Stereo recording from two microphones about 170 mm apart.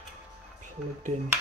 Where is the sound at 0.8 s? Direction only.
5° right (ahead or behind).